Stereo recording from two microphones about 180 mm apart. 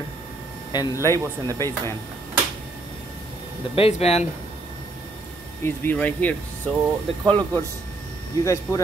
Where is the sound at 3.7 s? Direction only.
35° left (ahead or behind).